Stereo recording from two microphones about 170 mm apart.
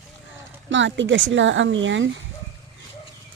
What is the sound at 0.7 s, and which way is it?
Speech, 90° right.